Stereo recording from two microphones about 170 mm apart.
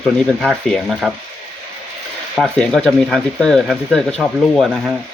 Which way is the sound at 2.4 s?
5° left (ahead or behind).